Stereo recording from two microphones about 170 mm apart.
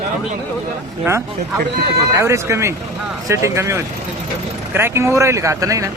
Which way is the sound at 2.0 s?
15° right (ahead or behind).